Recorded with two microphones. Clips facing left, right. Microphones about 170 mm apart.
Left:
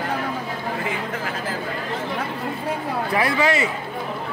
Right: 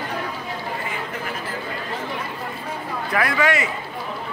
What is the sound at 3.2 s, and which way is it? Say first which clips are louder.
Speech: even; 30° left (ahead or behind).